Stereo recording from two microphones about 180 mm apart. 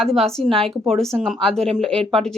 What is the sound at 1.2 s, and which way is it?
Speech, centre (ahead or behind).